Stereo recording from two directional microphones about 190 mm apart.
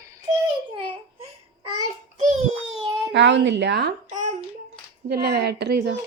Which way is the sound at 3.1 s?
70° right (ahead or behind).